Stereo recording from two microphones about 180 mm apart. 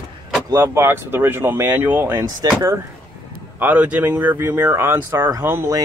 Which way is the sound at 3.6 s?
10° right (ahead or behind).